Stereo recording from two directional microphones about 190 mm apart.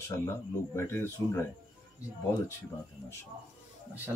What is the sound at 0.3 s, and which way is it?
Speech, 15° left (ahead or behind).